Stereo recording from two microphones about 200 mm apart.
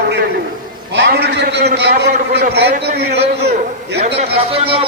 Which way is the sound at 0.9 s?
55° right (ahead or behind).